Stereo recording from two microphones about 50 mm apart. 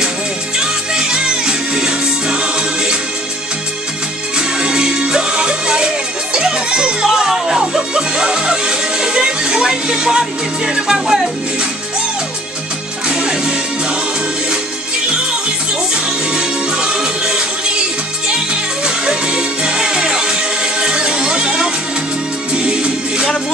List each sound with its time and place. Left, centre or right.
0.6 s music: centre
4.4 s music: centre
7.1 s music: centre
13.1 s music: centre
16.3 s music: centre